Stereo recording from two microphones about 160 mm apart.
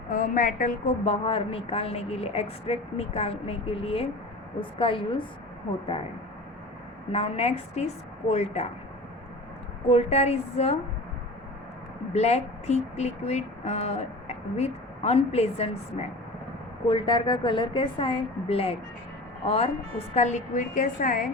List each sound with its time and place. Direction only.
0.1 s a woman's voice: 55° left (ahead or behind)
1.0 s speech: 35° left (ahead or behind)
7.1 s speech: 40° left (ahead or behind)
9.9 s speech: 40° left (ahead or behind)
12.1 s a woman's voice: 40° left (ahead or behind)